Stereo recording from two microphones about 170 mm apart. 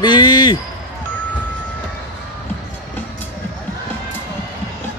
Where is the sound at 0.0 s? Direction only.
25° left (ahead or behind).